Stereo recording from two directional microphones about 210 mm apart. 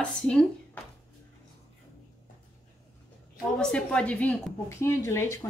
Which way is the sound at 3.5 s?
5° left (ahead or behind).